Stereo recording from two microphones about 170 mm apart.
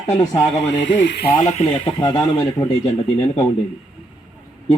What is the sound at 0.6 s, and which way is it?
Speech, 90° left.